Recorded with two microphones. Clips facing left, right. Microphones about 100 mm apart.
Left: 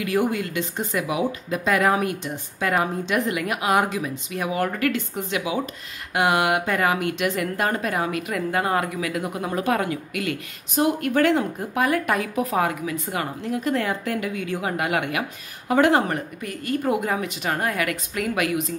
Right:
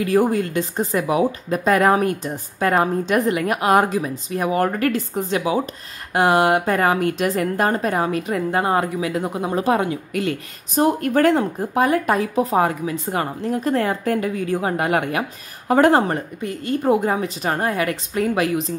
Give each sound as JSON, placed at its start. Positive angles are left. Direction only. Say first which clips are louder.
{"t": 0.0, "sound": "a woman's voice", "louder": "right 5 dB", "side_deg": -35}